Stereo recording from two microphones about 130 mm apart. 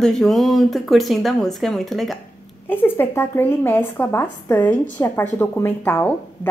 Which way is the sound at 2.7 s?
15° left (ahead or behind).